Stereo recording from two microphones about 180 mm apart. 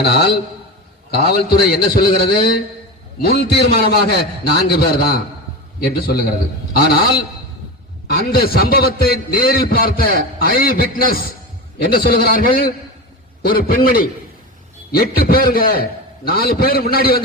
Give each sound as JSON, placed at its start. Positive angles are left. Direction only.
{"t": 0.0, "sound": "a man's voice", "side_deg": 65}